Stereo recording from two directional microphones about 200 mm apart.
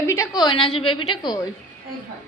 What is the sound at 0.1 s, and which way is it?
A woman's voice, 15° left (ahead or behind).